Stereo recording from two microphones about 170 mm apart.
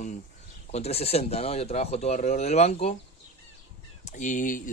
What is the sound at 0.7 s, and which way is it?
Speech, 40° left (ahead or behind).